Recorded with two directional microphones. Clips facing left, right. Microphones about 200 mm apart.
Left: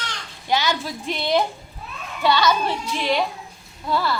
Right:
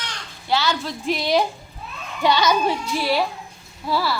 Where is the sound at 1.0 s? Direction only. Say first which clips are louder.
Right 1 dB; 5° right (ahead or behind).